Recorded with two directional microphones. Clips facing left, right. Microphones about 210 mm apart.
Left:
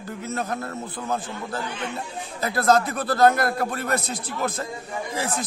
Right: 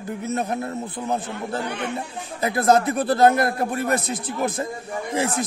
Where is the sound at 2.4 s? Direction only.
20° right (ahead or behind).